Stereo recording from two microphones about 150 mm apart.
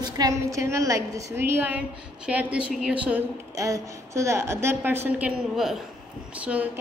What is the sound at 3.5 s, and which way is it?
A woman's voice, 20° right (ahead or behind).